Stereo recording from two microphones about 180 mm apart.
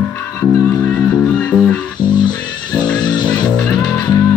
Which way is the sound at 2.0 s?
25° left (ahead or behind).